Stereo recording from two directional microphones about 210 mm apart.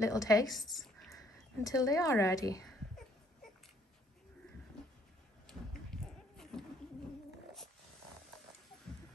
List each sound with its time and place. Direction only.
0.0 s speech: 15° left (ahead or behind)
0.5 s speech: centre (ahead or behind)
1.1 s speech: 15° left (ahead or behind)
5.9 s a sound: centre (ahead or behind)